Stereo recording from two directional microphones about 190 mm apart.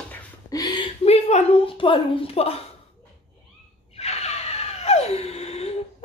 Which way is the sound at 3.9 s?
35° left (ahead or behind).